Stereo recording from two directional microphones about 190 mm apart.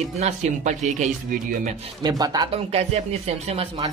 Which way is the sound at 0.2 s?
40° right (ahead or behind).